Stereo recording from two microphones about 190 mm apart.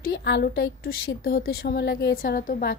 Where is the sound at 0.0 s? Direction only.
60° left (ahead or behind).